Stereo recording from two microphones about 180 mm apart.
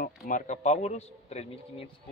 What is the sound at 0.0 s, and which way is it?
A man's voice, 45° left (ahead or behind).